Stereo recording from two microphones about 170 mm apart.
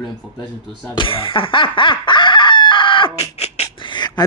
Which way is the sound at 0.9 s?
30° left (ahead or behind).